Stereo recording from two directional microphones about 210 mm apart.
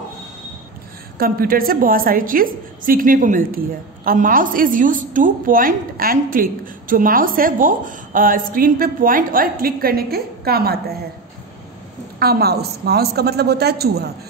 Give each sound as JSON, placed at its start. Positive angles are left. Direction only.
{"t": 1.1, "sound": "a woman's voice", "side_deg": -45}
{"t": 12.2, "sound": "a woman's voice", "side_deg": -50}